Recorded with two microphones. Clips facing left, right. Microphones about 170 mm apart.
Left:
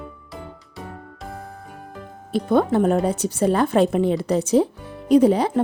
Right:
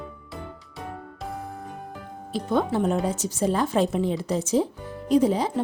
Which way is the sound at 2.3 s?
55° left (ahead or behind).